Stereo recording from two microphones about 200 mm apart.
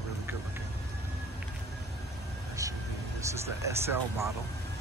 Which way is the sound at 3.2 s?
15° right (ahead or behind).